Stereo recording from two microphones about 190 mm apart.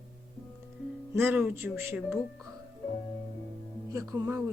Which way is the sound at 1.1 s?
10° right (ahead or behind).